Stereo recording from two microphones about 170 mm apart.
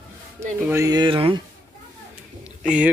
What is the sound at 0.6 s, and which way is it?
Speech, 20° right (ahead or behind).